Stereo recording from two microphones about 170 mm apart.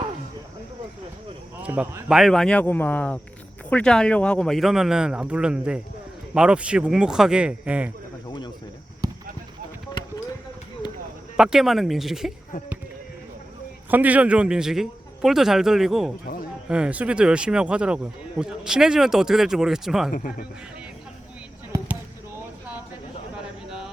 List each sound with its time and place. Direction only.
1.6 s speech: 10° right (ahead or behind)
2.0 s speech: centre (ahead or behind)
8.3 s a sound: 25° left (ahead or behind)
9.0 s a sound: 20° right (ahead or behind)
11.3 s speech: 5° right (ahead or behind)
13.9 s speech: 10° right (ahead or behind)
16.2 s speech: 55° left (ahead or behind)
16.6 s speech: 5° right (ahead or behind)
20.1 s speech: 50° left (ahead or behind)